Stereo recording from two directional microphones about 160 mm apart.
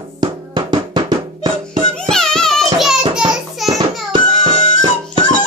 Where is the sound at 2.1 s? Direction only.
5° left (ahead or behind).